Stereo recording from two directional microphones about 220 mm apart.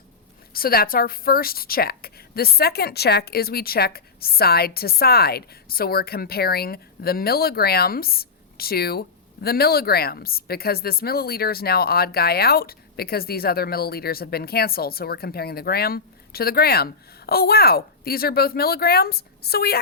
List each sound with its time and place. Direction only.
0.5 s a woman's voice: 45° left (ahead or behind)